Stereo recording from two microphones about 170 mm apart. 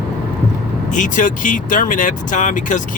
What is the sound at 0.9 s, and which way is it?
Speech, 50° left (ahead or behind).